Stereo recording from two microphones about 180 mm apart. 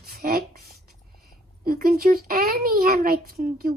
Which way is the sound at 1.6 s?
55° right (ahead or behind).